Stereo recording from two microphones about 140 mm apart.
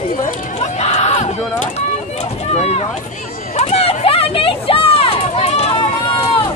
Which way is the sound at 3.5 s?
45° left (ahead or behind).